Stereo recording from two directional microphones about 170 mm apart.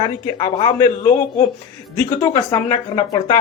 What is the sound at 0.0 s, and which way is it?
Speech, 25° left (ahead or behind).